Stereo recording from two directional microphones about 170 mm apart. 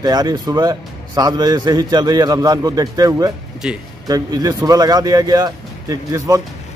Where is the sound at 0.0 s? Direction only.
25° right (ahead or behind).